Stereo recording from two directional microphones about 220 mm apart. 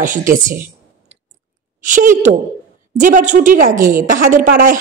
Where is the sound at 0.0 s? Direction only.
35° right (ahead or behind).